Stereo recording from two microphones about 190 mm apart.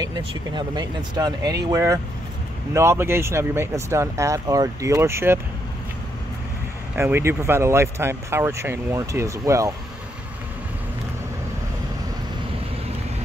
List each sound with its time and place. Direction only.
0.0 s speech: 20° right (ahead or behind)
7.0 s speech: 15° right (ahead or behind)